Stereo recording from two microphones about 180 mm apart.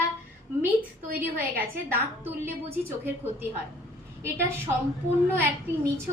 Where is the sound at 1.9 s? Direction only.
10° right (ahead or behind).